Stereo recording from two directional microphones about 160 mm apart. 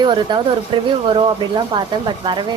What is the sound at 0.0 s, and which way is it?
Speech, 30° right (ahead or behind).